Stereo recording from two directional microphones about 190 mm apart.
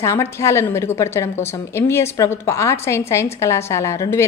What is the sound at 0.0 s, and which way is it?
A woman's voice, 15° left (ahead or behind).